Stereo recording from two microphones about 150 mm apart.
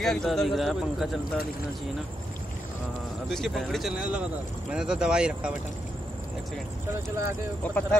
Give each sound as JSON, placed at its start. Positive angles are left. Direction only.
{"t": 0.0, "sound": "speech", "side_deg": 0}
{"t": 3.3, "sound": "speech", "side_deg": 5}
{"t": 6.9, "sound": "speech", "side_deg": -20}